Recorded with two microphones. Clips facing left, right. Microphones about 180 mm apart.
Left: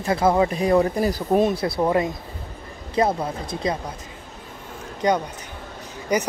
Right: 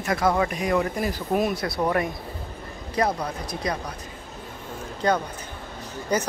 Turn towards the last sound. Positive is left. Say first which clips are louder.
# left 2 dB
turn(degrees=15)  # may be behind; listen again after turning